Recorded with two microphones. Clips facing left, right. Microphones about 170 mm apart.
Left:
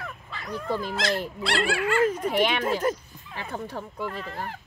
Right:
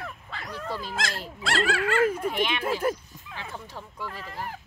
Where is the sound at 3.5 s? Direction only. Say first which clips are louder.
Left 11 dB; 60° left (ahead or behind).